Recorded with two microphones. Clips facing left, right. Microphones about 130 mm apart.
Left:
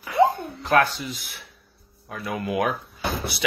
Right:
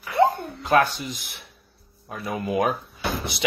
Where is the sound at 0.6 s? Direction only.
20° right (ahead or behind).